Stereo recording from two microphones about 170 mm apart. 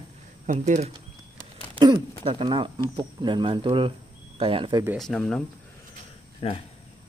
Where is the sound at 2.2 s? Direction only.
30° right (ahead or behind).